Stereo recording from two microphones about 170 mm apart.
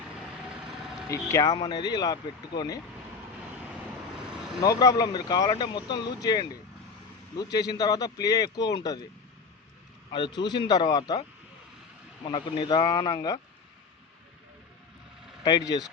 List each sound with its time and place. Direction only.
1.0 s speech: 20° left (ahead or behind)
4.6 s speech: 20° left (ahead or behind)
10.1 s speech: 30° left (ahead or behind)
12.3 s speech: 25° left (ahead or behind)
15.4 s speech: 20° left (ahead or behind)